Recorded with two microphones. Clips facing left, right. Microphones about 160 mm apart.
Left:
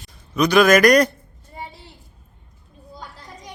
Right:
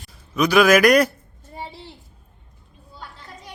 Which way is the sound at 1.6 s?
30° right (ahead or behind).